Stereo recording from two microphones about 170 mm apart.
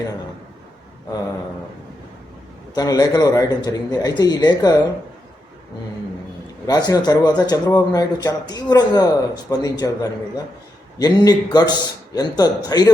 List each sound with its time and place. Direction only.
2.7 s speech: 20° left (ahead or behind)
6.7 s speech: 20° left (ahead or behind)